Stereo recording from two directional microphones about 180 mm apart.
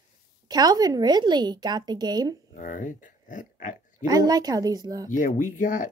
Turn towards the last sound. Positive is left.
turn(degrees=45)  # may be behind; listen again after turning